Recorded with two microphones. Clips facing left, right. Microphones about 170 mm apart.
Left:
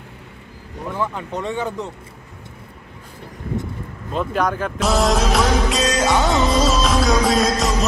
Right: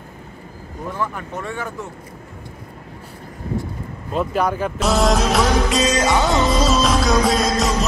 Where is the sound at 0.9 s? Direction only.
20° left (ahead or behind).